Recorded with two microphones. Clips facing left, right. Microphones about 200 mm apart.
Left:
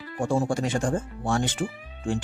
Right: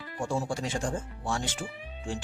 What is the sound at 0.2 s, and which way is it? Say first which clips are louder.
Speech: left 6 dB; 55° left (ahead or behind).